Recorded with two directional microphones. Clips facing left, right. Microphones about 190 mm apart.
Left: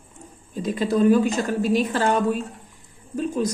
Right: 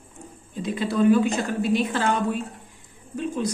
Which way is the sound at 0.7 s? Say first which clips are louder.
Left 1 dB; 40° left (ahead or behind).